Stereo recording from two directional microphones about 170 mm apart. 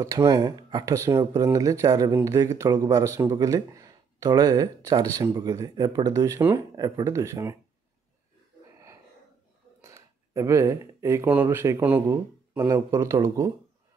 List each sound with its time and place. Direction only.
0.0 s speech: 20° right (ahead or behind)
9.8 s speech: 15° right (ahead or behind)